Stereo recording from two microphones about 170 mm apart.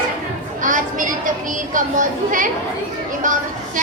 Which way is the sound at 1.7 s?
50° right (ahead or behind).